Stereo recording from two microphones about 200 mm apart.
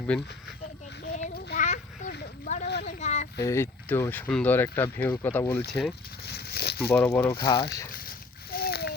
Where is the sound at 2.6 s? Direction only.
55° left (ahead or behind).